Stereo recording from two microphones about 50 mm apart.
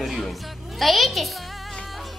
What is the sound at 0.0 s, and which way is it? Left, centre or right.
Speech, centre.